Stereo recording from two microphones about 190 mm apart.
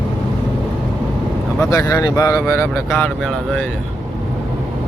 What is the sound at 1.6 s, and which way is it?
Speech, 15° left (ahead or behind).